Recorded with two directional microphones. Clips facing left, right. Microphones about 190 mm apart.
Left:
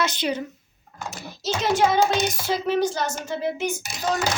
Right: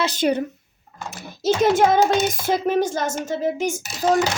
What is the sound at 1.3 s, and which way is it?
Speech, 50° right (ahead or behind).